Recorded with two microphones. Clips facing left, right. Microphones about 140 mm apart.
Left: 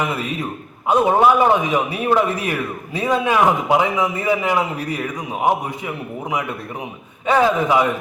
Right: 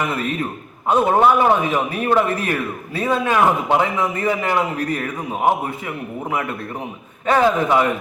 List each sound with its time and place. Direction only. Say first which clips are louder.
0.0 s a man's voice: right 1 dB; 10° left (ahead or behind)